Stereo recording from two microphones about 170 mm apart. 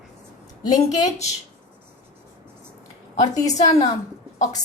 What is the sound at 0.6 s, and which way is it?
Speech, 25° left (ahead or behind).